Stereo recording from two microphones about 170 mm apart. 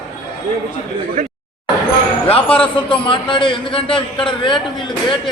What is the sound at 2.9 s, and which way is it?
A man's voice, 30° left (ahead or behind).